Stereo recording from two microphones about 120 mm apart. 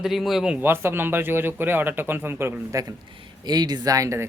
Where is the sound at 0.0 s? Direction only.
Centre (ahead or behind); by 2.8 s 20° right (ahead or behind).